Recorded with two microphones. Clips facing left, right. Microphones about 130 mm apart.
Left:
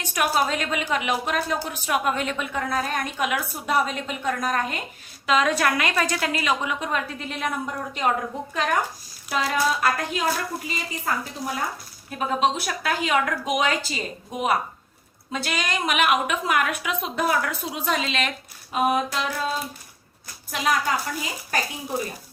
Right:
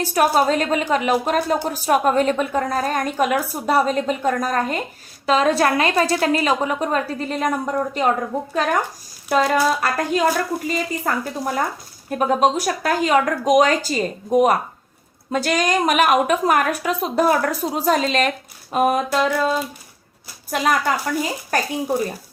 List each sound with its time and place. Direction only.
0.0 s a woman's voice: 35° right (ahead or behind)
9.3 s a woman's voice: 45° right (ahead or behind)